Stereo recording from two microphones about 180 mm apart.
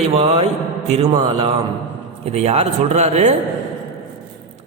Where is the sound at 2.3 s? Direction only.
35° right (ahead or behind).